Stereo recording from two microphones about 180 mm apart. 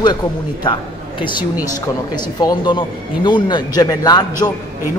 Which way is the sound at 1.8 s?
20° left (ahead or behind).